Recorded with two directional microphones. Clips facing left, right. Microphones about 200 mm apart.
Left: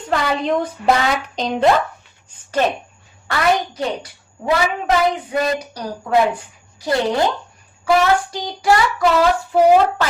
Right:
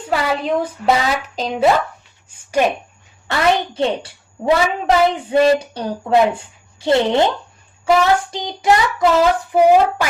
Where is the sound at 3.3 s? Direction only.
25° right (ahead or behind).